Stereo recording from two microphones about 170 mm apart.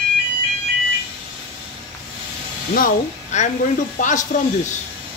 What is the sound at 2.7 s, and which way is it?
Speech, 50° left (ahead or behind).